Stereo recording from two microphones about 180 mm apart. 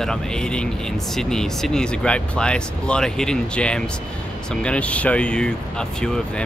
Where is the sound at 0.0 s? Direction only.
5° left (ahead or behind).